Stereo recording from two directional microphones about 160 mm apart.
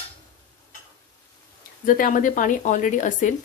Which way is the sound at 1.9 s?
55° left (ahead or behind).